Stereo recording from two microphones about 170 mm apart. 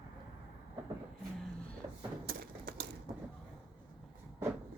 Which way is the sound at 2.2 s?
60° right (ahead or behind).